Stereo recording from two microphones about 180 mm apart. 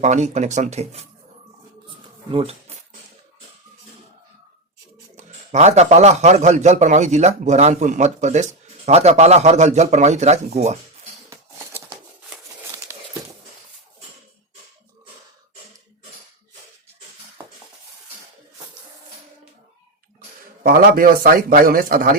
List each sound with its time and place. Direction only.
0.0 s a man's voice: 40° right (ahead or behind)
2.3 s speech: 30° right (ahead or behind)
5.1 s a man's voice: 40° right (ahead or behind)
11.3 s a sound: 10° right (ahead or behind)
20.7 s a man's voice: 50° right (ahead or behind)